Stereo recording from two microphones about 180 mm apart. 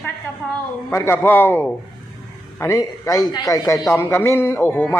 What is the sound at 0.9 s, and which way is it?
A man's voice, 15° left (ahead or behind).